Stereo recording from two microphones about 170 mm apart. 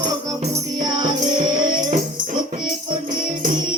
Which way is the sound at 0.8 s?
25° right (ahead or behind).